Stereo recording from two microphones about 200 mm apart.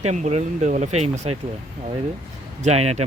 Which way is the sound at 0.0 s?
35° right (ahead or behind).